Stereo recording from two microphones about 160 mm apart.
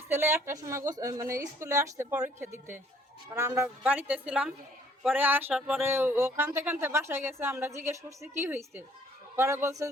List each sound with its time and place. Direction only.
0.1 s speech: 15° right (ahead or behind)
3.3 s speech: 15° right (ahead or behind)